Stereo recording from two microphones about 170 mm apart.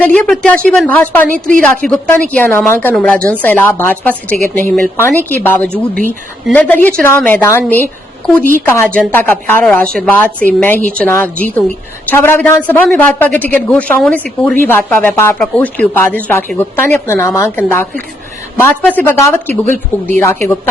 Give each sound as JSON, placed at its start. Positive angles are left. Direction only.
{"t": 0.0, "sound": "a woman's voice", "side_deg": 5}
{"t": 1.3, "sound": "a woman's voice", "side_deg": -50}
{"t": 1.7, "sound": "a woman's voice", "side_deg": 10}